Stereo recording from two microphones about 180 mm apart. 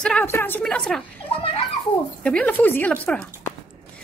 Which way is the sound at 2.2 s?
10° left (ahead or behind).